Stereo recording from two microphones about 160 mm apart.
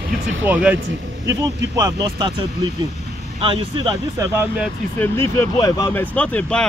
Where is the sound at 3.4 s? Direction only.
30° right (ahead or behind).